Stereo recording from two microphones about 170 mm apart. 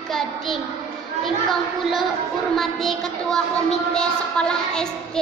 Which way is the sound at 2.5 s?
Centre (ahead or behind).